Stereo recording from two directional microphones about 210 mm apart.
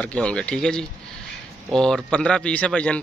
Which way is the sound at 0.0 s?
5° left (ahead or behind).